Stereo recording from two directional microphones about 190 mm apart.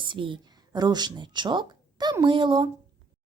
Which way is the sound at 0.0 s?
25° right (ahead or behind).